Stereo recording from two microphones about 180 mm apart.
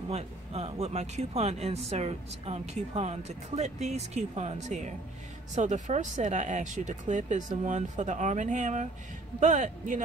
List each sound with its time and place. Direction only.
0.1 s speech: 35° right (ahead or behind)